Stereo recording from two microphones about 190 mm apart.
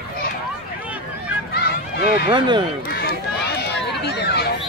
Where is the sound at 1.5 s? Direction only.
55° left (ahead or behind).